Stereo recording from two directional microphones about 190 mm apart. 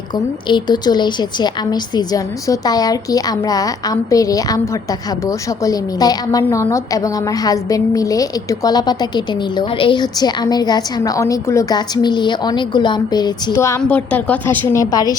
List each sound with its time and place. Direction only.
0.1 s a woman's voice: 25° left (ahead or behind)